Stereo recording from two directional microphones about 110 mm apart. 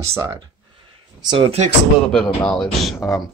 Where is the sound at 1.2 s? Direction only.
40° right (ahead or behind).